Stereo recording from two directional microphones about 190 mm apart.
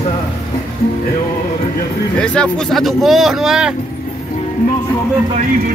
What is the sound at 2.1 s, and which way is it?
Speech, 5° left (ahead or behind).